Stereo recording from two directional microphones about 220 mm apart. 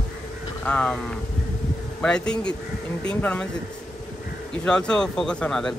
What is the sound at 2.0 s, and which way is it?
Speech, 5° left (ahead or behind).